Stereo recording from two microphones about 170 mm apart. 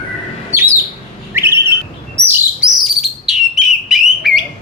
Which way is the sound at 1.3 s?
15° right (ahead or behind).